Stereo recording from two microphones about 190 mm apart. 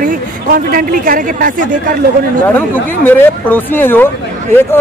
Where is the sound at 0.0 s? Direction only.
50° right (ahead or behind).